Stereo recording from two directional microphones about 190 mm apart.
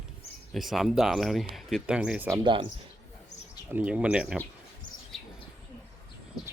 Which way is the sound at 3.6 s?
10° right (ahead or behind).